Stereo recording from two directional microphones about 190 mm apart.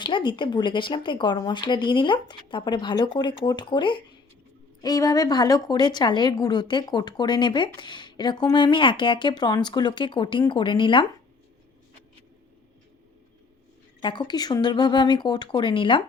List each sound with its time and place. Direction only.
0.0 s a woman's voice: 25° left (ahead or behind)
14.0 s a woman's voice: 25° left (ahead or behind)